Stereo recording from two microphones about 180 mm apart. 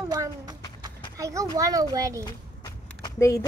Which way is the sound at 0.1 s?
20° right (ahead or behind).